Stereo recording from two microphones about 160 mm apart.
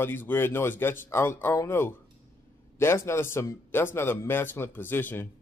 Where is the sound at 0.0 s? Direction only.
15° left (ahead or behind).